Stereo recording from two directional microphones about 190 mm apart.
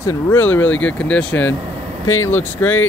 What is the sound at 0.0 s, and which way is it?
Speech, 15° left (ahead or behind).